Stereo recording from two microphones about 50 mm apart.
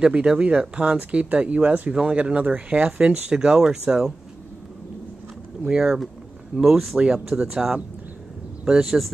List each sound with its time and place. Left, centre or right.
0.0 s speech: right
1.9 s speech: centre
3.1 s speech: centre
5.7 s speech: centre
8.6 s speech: centre